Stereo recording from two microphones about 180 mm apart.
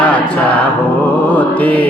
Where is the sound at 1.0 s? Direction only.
10° left (ahead or behind).